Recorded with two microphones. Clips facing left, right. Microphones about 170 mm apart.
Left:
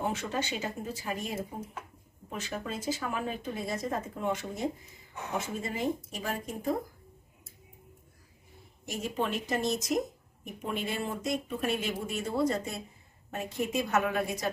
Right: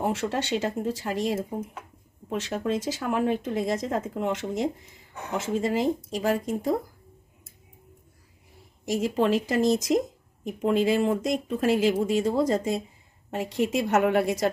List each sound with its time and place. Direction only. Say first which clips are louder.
0.0 s speech: right 5 dB; 80° right
8.8 s speech: right 9 dB; 90° right